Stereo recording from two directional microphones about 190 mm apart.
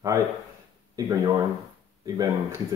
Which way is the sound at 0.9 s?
20° right (ahead or behind).